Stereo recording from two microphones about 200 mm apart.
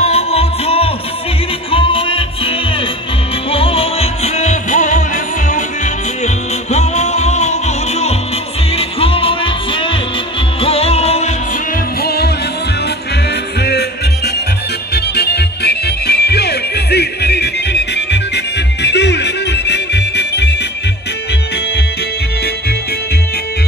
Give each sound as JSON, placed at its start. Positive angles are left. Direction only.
{"t": 0.0, "sound": "music", "side_deg": 30}
{"t": 12.0, "sound": "music", "side_deg": 50}
{"t": 13.6, "sound": "music", "side_deg": 55}